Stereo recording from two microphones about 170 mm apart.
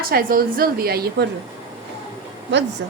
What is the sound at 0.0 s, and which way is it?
A woman's voice, 60° right (ahead or behind).